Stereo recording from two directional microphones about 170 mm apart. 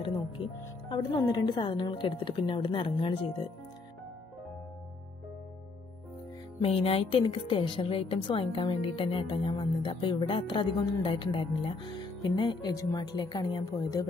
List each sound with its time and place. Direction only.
0.8 s a woman's voice: 25° left (ahead or behind)
6.6 s a woman's voice: 35° left (ahead or behind)